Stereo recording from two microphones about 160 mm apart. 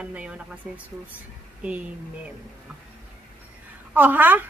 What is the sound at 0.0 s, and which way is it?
Speech, 5° right (ahead or behind).